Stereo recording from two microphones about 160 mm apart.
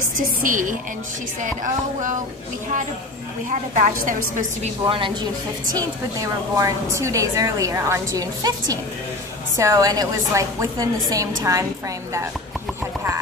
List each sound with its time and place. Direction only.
0.4 s a woman's voice: 55° right (ahead or behind)
3.4 s a woman's voice: 55° right (ahead or behind)
4.8 s speech: 35° right (ahead or behind)
5.7 s a woman's voice: 20° right (ahead or behind)